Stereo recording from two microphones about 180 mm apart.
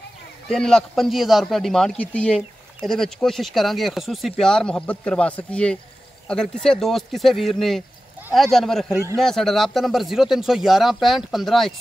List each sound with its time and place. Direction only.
0.5 s a man's voice: 5° left (ahead or behind)
8.9 s a man's voice: 15° right (ahead or behind)
9.2 s a man's voice: centre (ahead or behind)